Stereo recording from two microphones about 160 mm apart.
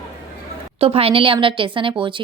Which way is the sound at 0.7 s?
35° right (ahead or behind).